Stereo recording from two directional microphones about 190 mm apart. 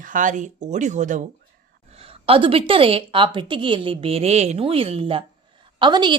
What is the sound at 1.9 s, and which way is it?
A woman's voice, 30° right (ahead or behind).